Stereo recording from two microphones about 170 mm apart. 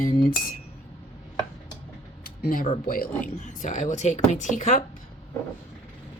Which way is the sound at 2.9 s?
55° left (ahead or behind).